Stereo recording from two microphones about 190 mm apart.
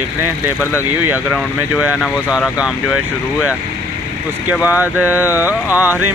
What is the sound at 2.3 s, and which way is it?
Speech, 5° right (ahead or behind).